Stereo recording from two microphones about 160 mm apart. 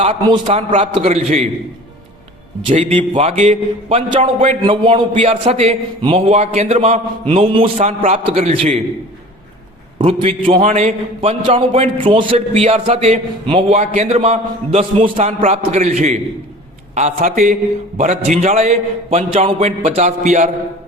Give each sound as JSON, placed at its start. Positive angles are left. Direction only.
{"t": 0.0, "sound": "a man's voice", "side_deg": -35}
{"t": 2.9, "sound": "a man's voice", "side_deg": -35}
{"t": 7.8, "sound": "a man's voice", "side_deg": -45}
{"t": 10.0, "sound": "a man's voice", "side_deg": -35}